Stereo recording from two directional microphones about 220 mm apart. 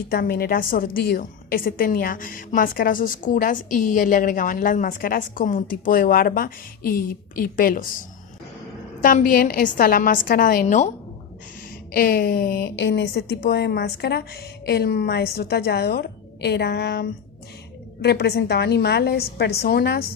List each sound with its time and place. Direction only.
0.1 s a woman's voice: 40° left (ahead or behind)
9.0 s a woman's voice: 35° left (ahead or behind)
11.9 s a woman's voice: 40° left (ahead or behind)